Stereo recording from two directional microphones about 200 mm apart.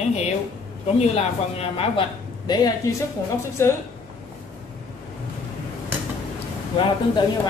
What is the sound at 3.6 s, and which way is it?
Speech, 15° left (ahead or behind).